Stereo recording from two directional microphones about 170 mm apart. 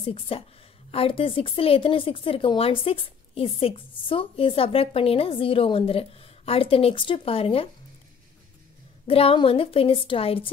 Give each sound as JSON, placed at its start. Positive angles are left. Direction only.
{"t": 0.0, "sound": "a woman's voice", "side_deg": 30}
{"t": 9.0, "sound": "a woman's voice", "side_deg": 35}